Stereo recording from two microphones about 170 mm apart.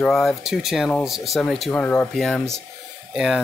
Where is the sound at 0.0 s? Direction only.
5° left (ahead or behind).